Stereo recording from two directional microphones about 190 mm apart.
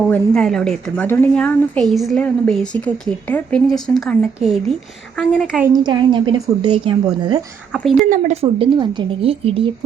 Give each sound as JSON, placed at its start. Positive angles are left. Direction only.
{"t": 0.1, "sound": "a woman's voice", "side_deg": 5}
{"t": 5.6, "sound": "a woman's voice", "side_deg": -20}
{"t": 7.7, "sound": "a woman's voice", "side_deg": 0}
{"t": 8.1, "sound": "a woman's voice", "side_deg": -35}